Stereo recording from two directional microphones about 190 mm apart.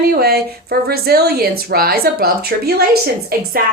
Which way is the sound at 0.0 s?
55° right (ahead or behind).